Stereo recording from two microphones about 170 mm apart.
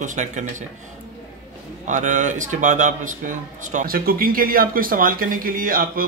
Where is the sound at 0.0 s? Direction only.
45° right (ahead or behind).